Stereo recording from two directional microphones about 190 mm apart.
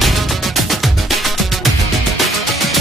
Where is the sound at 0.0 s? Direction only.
Centre (ahead or behind).